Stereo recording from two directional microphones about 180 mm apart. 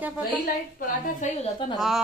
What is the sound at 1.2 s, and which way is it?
Speech, 40° left (ahead or behind).